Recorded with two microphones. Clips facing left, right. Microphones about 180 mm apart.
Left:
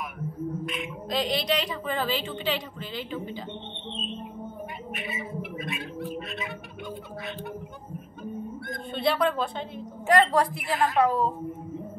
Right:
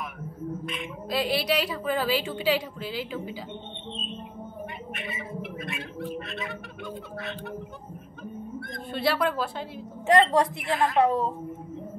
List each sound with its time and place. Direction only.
0.7 s a woman's voice: centre (ahead or behind)
4.9 s speech: centre (ahead or behind)
8.6 s speech: 5° right (ahead or behind)
10.0 s a woman's voice: 25° right (ahead or behind)
10.6 s speech: centre (ahead or behind)
11.0 s a woman's voice: 25° right (ahead or behind)